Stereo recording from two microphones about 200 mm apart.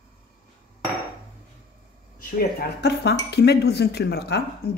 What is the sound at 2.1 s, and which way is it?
Speech, 55° left (ahead or behind).